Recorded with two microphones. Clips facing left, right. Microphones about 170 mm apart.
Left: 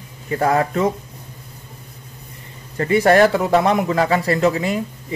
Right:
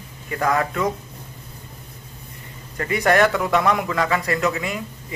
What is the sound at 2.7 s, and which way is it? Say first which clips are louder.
Speech: left 5 dB; 30° left (ahead or behind).